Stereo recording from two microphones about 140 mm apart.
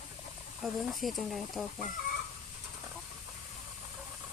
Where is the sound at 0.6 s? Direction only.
Centre (ahead or behind).